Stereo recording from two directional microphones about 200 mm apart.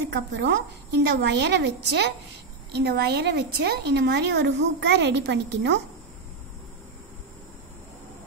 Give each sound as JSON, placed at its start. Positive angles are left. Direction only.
{"t": 0.1, "sound": "a woman's voice", "side_deg": -60}